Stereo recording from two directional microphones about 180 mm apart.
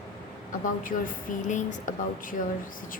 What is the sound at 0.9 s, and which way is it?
A woman's voice, 45° left (ahead or behind).